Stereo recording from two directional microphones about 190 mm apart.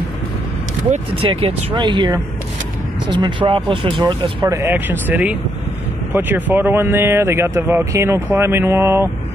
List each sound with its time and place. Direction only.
0.8 s speech: 35° right (ahead or behind)
4.6 s speech: 10° right (ahead or behind)